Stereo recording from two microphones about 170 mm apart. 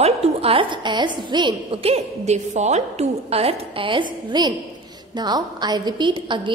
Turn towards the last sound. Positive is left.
turn(degrees=-30)  # may be behind; listen again after turning